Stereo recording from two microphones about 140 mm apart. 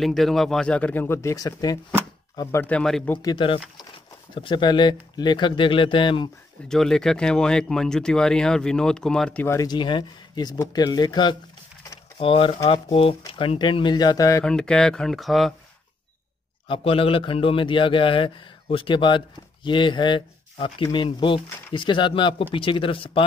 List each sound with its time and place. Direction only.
0.0 s speech: centre (ahead or behind); by 1.8 s 25° left (ahead or behind)
2.5 s speech: 15° left (ahead or behind)
3.2 s speech: 30° left (ahead or behind)
6.7 s speech: 5° left (ahead or behind)
9.7 s speech: 35° left (ahead or behind)
14.4 s speech: 5° left (ahead or behind)
16.6 s speech: 40° left (ahead or behind)